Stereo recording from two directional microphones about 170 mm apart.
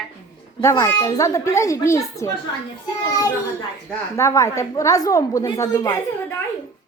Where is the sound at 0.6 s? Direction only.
20° left (ahead or behind).